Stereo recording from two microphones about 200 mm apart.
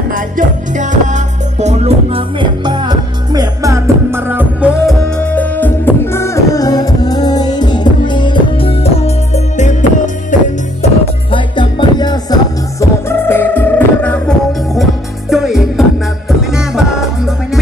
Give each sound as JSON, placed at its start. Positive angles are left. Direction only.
{"t": 0.1, "sound": "music", "side_deg": -40}
{"t": 5.3, "sound": "music", "side_deg": 10}
{"t": 11.3, "sound": "music", "side_deg": 20}